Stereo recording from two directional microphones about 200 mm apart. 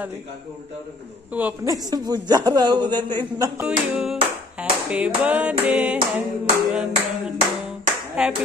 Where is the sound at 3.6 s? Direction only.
5° right (ahead or behind).